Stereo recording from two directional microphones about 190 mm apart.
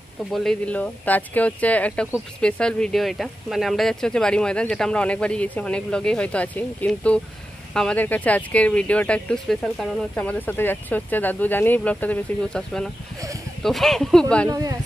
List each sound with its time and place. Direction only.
0.3 s speech: 5° left (ahead or behind)
14.5 s speech: 20° right (ahead or behind)